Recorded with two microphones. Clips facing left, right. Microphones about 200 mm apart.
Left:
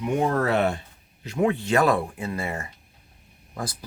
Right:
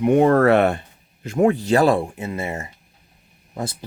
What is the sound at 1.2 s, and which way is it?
Speech, 45° right (ahead or behind).